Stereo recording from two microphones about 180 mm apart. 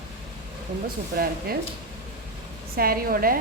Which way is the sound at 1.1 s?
60° right (ahead or behind).